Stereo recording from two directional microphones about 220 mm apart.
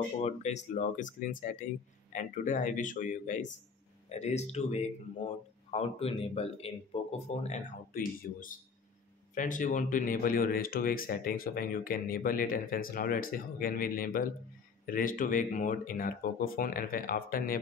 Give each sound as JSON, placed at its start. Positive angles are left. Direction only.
{"t": 0.2, "sound": "speech", "side_deg": 30}